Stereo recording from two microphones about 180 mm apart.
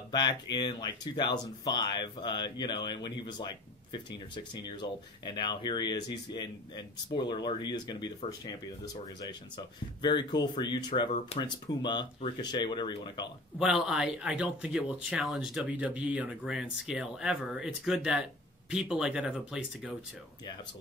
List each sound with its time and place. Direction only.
0.1 s speech: 25° left (ahead or behind)
7.2 s speech: 25° left (ahead or behind)
13.6 s speech: 5° right (ahead or behind)